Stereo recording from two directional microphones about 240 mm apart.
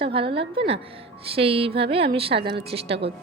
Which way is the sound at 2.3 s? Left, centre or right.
Right.